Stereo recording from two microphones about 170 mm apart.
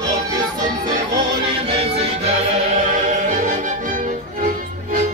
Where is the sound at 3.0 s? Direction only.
50° right (ahead or behind).